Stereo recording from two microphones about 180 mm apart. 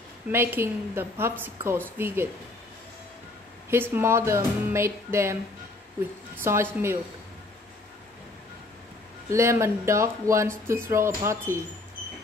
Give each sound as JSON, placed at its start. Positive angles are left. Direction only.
{"t": 0.3, "sound": "speech", "side_deg": -10}
{"t": 3.7, "sound": "speech", "side_deg": -10}
{"t": 9.3, "sound": "speech", "side_deg": -15}